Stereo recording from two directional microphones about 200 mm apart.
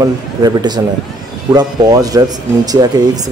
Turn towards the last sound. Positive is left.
turn(degrees=-20)  # may be behind; listen again after turning